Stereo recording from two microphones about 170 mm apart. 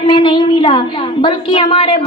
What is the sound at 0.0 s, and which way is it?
A woman's voice, 30° left (ahead or behind).